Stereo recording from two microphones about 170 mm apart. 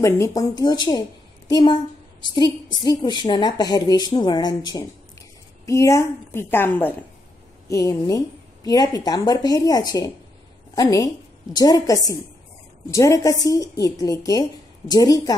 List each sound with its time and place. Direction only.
0.0 s a woman's voice: 20° left (ahead or behind)